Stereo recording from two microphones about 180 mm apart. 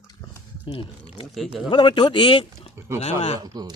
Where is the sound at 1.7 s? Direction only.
25° left (ahead or behind).